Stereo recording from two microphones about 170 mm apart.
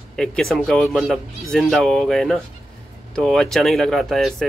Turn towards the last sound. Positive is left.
turn(degrees=0)  # may be behind; listen again after turning